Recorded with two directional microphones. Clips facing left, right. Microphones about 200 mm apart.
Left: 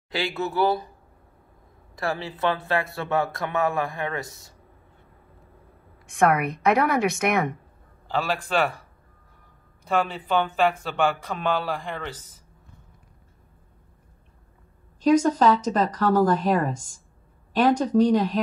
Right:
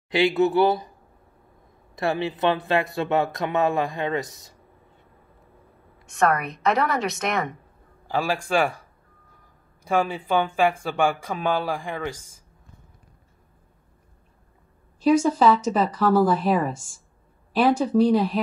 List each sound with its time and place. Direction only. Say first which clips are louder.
0.1 s speech: right 8 dB; 20° right (ahead or behind)
2.0 s speech: right 4 dB; 20° right (ahead or behind)
6.1 s a woman's voice: left 1 dB; 10° left (ahead or behind)
8.1 s speech: right 2 dB; 10° right (ahead or behind)
9.8 s speech: right 1 dB; 10° right (ahead or behind)
15.0 s speech: even; 10° right (ahead or behind)